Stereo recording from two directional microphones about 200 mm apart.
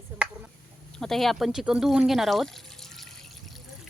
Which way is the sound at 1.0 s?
Centre (ahead or behind).